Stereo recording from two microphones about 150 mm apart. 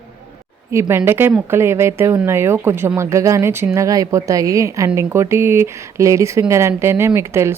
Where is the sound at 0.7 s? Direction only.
15° right (ahead or behind).